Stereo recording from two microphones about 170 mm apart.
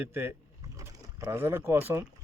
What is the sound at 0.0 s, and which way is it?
Speech, 15° right (ahead or behind).